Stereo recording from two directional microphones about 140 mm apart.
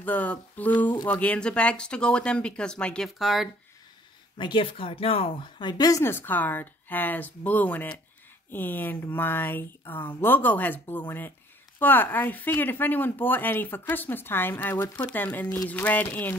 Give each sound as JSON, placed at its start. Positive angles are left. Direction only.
{"t": 0.0, "sound": "speech", "side_deg": 10}
{"t": 4.4, "sound": "speech", "side_deg": 35}